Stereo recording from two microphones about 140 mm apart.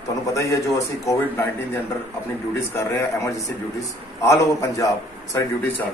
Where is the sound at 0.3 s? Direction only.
20° left (ahead or behind).